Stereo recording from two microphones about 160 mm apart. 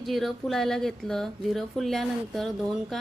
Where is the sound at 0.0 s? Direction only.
Centre (ahead or behind).